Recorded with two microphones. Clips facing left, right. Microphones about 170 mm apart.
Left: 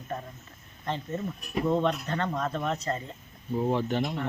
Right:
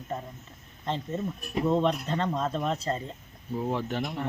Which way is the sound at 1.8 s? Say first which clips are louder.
Right 1 dB; 25° right (ahead or behind).